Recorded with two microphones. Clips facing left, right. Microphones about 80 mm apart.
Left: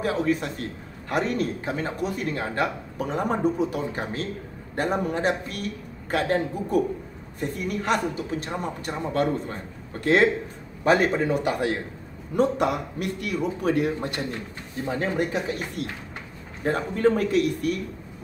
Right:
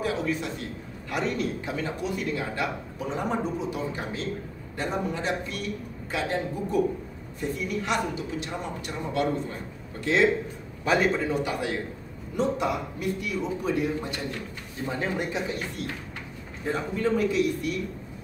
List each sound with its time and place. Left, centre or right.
0.0 s a man's voice: left
12.4 s a man's voice: left
16.6 s a man's voice: left